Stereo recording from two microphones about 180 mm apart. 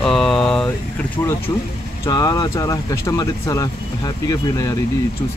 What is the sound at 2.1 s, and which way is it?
Speech, 20° left (ahead or behind).